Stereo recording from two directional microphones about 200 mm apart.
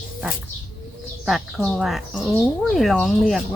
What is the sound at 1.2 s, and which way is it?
Speech, centre (ahead or behind).